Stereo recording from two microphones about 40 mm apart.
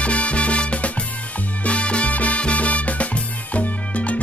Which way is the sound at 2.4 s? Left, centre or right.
Left.